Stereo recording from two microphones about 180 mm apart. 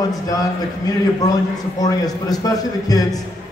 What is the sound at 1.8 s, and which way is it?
A man's voice, 20° left (ahead or behind).